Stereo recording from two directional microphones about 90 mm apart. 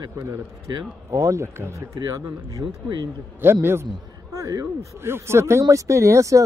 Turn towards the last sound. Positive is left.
turn(degrees=-35)  # may be behind; listen again after turning